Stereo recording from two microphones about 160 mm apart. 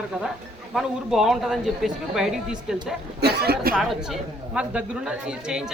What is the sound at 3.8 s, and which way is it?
Speech, centre (ahead or behind).